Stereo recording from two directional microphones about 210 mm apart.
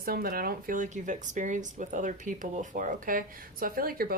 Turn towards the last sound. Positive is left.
turn(degrees=-45)  # may be behind; listen again after turning